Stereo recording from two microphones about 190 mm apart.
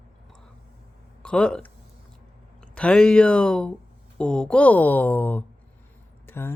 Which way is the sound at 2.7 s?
5° left (ahead or behind).